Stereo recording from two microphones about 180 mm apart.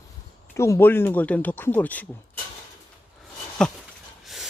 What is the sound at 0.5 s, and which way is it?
Speech, 15° left (ahead or behind).